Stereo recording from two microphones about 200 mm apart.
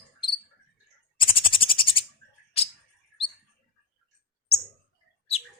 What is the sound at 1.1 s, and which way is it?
Bird, 25° left (ahead or behind).